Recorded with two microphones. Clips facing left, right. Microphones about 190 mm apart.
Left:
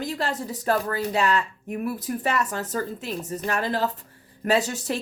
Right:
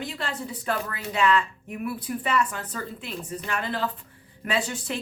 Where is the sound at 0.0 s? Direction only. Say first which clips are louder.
Left 4 dB; 40° left (ahead or behind).